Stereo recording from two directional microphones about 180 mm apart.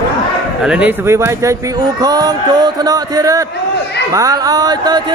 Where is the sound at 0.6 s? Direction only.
5° right (ahead or behind).